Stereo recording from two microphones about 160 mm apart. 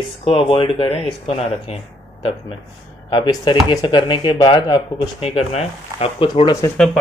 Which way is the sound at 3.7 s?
30° left (ahead or behind).